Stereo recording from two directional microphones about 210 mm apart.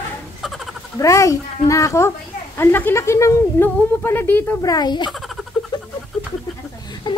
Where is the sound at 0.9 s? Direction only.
15° left (ahead or behind).